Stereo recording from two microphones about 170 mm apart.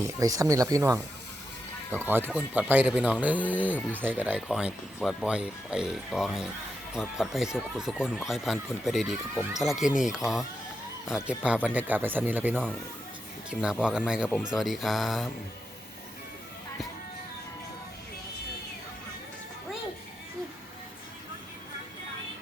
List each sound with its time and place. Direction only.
0.0 s speech: 20° right (ahead or behind)
2.0 s speech: 10° right (ahead or behind)
3.6 s speech: 10° left (ahead or behind)
3.9 s speech: 10° right (ahead or behind)